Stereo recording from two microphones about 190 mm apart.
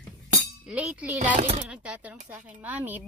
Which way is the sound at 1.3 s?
35° right (ahead or behind).